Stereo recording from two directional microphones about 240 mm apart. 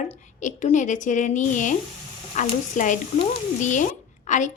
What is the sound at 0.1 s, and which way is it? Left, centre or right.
A woman's voice, left.